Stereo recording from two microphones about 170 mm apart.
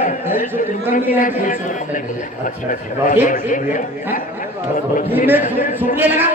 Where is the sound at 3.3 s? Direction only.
50° left (ahead or behind).